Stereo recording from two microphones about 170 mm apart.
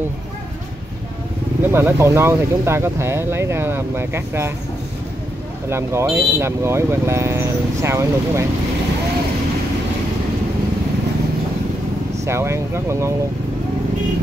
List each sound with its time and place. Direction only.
1.6 s speech: 15° right (ahead or behind)
5.7 s speech: 15° right (ahead or behind)
12.3 s speech: 15° right (ahead or behind)